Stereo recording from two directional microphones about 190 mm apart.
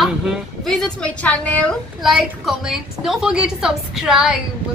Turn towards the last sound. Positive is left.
turn(degrees=-5)  # may be behind; listen again after turning